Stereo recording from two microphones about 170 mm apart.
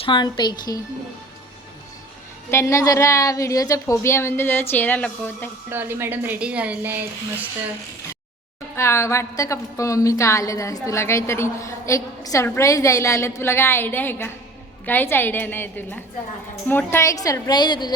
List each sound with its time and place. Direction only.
0.0 s a woman's voice: 25° left (ahead or behind)
2.5 s a woman's voice: 15° left (ahead or behind)
5.7 s a woman's voice: 10° right (ahead or behind)
8.7 s a woman's voice: 15° left (ahead or behind)